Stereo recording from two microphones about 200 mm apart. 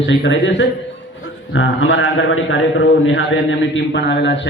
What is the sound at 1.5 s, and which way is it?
A man's voice, 75° left (ahead or behind).